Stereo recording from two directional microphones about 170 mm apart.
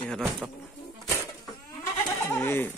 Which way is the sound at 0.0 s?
5° left (ahead or behind).